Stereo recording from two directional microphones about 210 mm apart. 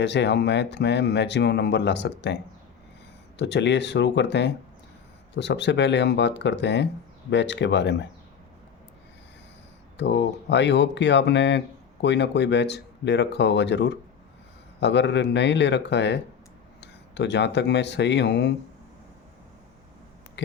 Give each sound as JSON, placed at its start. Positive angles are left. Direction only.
{"t": 0.0, "sound": "speech", "side_deg": 55}
{"t": 10.0, "sound": "speech", "side_deg": 55}